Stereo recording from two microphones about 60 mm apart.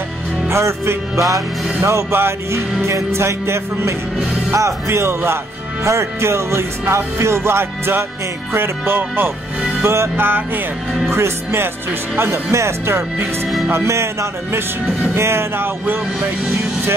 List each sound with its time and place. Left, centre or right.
0.5 s music: right
11.1 s music: right
15.1 s music: right